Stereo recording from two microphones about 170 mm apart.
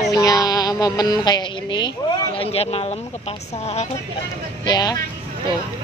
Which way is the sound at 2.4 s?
35° left (ahead or behind).